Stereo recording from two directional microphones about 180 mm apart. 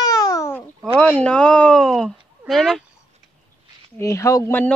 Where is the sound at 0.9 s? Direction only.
5° left (ahead or behind).